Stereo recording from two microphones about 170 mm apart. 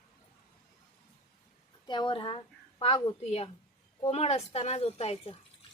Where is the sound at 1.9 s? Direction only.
30° left (ahead or behind).